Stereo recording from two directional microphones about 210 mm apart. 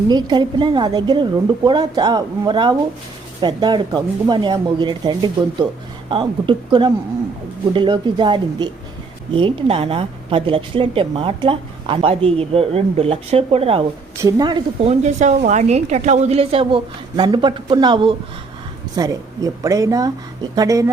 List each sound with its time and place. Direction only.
0.1 s a woman's voice: 20° right (ahead or behind)
14.2 s a woman's voice: 15° right (ahead or behind)